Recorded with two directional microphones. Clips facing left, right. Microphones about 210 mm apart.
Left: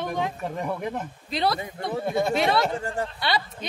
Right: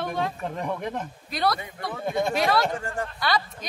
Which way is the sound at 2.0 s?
5° left (ahead or behind).